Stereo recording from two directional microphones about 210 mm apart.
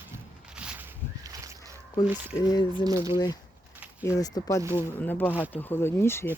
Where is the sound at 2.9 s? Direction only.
15° right (ahead or behind).